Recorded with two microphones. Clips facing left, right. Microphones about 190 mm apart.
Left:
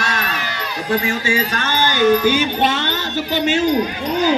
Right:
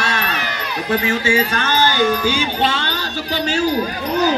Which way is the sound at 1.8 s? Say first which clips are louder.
Left 6 dB; 50° left (ahead or behind).